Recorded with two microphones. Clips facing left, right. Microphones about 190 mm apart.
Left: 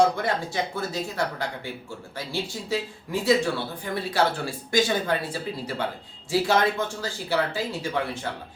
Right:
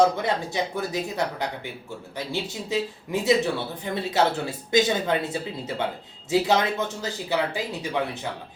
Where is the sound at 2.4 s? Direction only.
20° right (ahead or behind).